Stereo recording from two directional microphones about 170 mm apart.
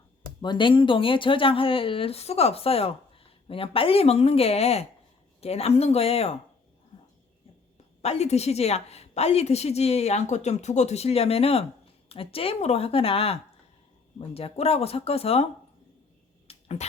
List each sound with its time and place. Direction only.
0.4 s speech: 30° left (ahead or behind)
8.0 s speech: 40° left (ahead or behind)
16.5 s a sound: 35° left (ahead or behind)